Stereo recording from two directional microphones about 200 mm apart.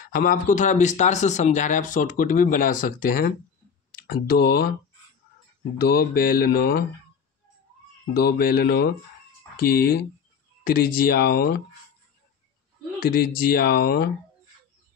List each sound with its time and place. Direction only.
0.0 s speech: 45° left (ahead or behind)
4.1 s mantra: 55° left (ahead or behind)
5.8 s mantra: 50° left (ahead or behind)
8.1 s mantra: 50° left (ahead or behind)
10.6 s a sound: 45° left (ahead or behind)
11.0 s mantra: 50° left (ahead or behind)
13.2 s mantra: 50° left (ahead or behind)